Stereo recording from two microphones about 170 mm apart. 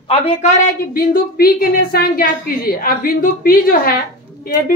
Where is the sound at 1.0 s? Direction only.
60° left (ahead or behind).